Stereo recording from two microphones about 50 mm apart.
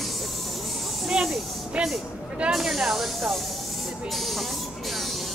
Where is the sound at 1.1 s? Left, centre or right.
Centre.